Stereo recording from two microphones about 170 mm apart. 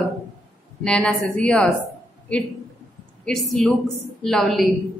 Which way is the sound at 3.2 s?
5° left (ahead or behind).